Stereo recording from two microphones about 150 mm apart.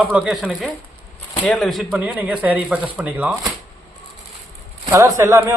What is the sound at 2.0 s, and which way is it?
A man's voice, 10° right (ahead or behind).